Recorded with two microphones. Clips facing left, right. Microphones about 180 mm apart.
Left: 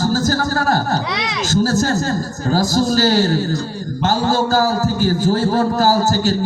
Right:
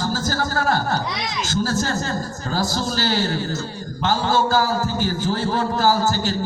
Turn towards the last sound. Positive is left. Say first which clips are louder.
# left 4 dB
turn(degrees=40)  # may be behind; listen again after turning